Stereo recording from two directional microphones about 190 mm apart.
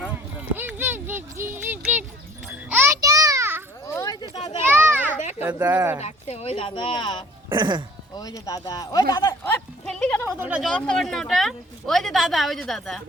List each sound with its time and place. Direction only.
0.5 s a sound: 10° right (ahead or behind)
3.9 s a sound: 20° left (ahead or behind)
4.7 s children playing: 10° right (ahead or behind)
5.4 s speech: 10° right (ahead or behind)
6.0 s speech: 35° left (ahead or behind)
7.5 s speech: 25° right (ahead or behind)
8.1 s speech: 20° left (ahead or behind)
10.2 s speech: 10° right (ahead or behind)